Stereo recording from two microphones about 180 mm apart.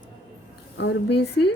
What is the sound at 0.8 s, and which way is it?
Speech, 70° left (ahead or behind).